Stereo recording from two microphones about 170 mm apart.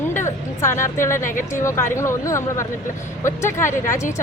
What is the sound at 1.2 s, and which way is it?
Speech, 50° left (ahead or behind).